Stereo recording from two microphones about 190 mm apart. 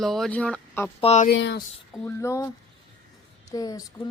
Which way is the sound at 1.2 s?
65° left (ahead or behind).